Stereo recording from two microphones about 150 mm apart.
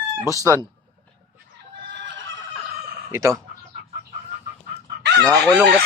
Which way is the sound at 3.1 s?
20° right (ahead or behind).